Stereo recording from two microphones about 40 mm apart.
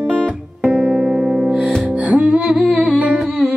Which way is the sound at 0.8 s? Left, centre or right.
Centre.